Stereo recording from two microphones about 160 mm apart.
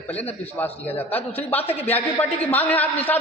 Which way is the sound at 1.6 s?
40° left (ahead or behind).